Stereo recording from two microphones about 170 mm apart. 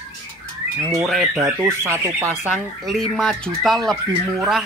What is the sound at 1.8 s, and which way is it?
Speech, 15° right (ahead or behind).